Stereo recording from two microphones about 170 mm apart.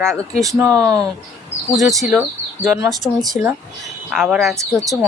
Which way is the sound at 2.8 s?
20° right (ahead or behind).